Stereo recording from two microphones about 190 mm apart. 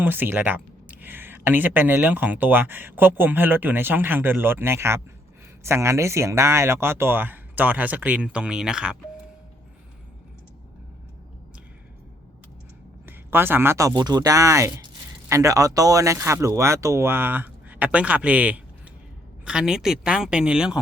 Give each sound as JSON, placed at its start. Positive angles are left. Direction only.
{"t": 0.0, "sound": "speech", "side_deg": -10}
{"t": 13.1, "sound": "speech", "side_deg": -10}